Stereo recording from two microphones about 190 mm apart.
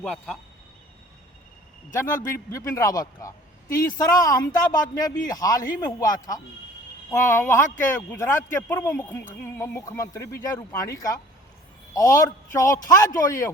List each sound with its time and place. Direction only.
0.0 s speech: 5° left (ahead or behind)
1.9 s a man's voice: 15° left (ahead or behind)